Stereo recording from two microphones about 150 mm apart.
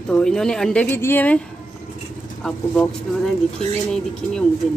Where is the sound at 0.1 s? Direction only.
5° left (ahead or behind).